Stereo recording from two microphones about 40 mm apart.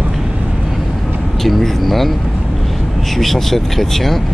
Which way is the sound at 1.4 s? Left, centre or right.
Centre.